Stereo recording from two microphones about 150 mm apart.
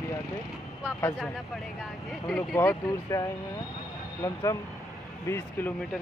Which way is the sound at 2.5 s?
20° left (ahead or behind).